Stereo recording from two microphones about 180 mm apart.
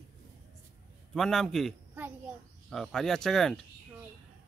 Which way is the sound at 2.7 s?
Centre (ahead or behind).